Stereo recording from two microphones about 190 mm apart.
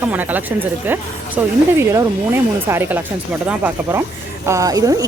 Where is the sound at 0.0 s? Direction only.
10° right (ahead or behind).